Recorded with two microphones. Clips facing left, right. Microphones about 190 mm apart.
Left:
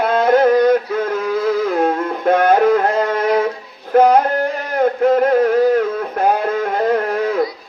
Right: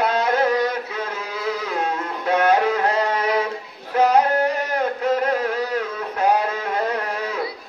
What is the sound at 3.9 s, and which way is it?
Music, 55° left (ahead or behind).